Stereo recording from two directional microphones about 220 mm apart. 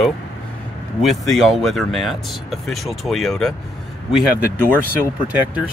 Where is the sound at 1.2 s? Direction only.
Centre (ahead or behind).